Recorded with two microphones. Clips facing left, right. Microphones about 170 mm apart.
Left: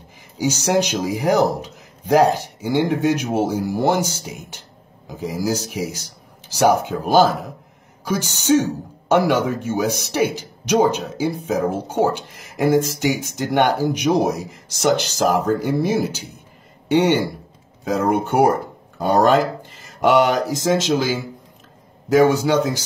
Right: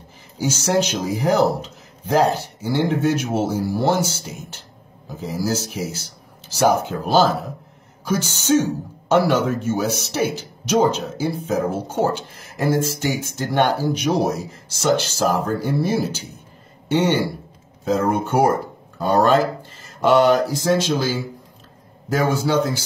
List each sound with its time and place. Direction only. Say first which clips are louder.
0.4 s speech: left 1 dB; 15° left (ahead or behind)